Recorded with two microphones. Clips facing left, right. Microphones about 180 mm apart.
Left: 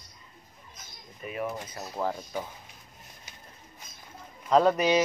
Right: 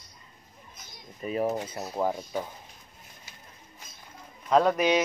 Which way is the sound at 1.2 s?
40° right (ahead or behind).